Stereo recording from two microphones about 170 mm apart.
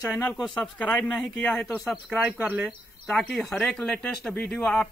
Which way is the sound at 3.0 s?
5° left (ahead or behind).